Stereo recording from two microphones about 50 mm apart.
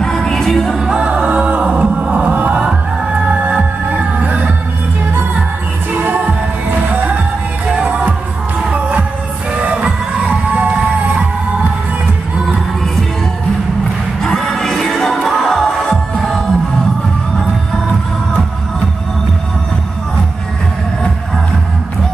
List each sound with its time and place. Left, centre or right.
0.0 s music: centre
0.8 s music: right
5.9 s music: right
14.2 s music: centre